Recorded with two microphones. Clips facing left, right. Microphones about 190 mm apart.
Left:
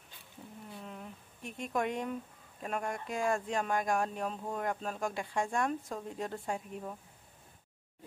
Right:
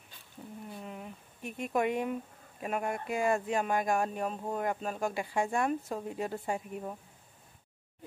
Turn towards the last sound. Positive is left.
turn(degrees=-5)  # may be behind; listen again after turning